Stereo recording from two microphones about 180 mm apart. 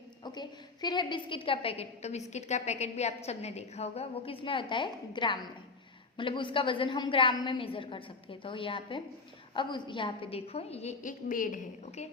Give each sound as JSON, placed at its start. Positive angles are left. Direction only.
{"t": 0.3, "sound": "a woman's voice", "side_deg": 25}